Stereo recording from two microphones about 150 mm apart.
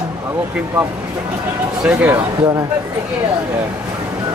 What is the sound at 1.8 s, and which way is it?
Speech, 10° right (ahead or behind).